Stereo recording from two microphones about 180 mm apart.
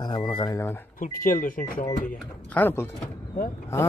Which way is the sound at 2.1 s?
5° left (ahead or behind).